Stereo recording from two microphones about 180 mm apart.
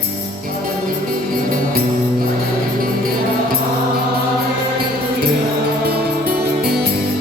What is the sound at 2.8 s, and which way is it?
Music, 55° right (ahead or behind).